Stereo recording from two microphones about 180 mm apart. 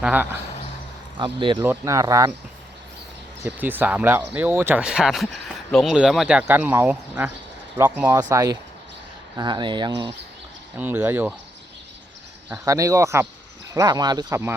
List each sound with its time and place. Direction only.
0.0 s speech: 10° right (ahead or behind)
1.2 s speech: 25° right (ahead or behind)
1.5 s speech: 10° right (ahead or behind)
3.4 s speech: 10° right (ahead or behind); by 9.9 s 25° right (ahead or behind)
10.8 s speech: 10° right (ahead or behind)
12.5 s speech: 20° right (ahead or behind)